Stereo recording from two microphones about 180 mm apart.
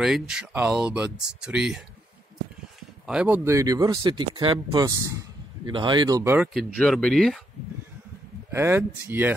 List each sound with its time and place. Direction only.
0.0 s speech: centre (ahead or behind)
3.1 s speech: 5° right (ahead or behind)
6.8 s speech: 5° left (ahead or behind)
8.5 s speech: 15° right (ahead or behind)